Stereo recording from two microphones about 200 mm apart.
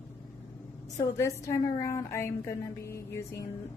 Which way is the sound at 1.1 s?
15° left (ahead or behind).